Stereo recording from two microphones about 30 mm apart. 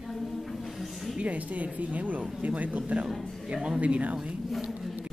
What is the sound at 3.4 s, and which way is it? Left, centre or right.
Speech, right.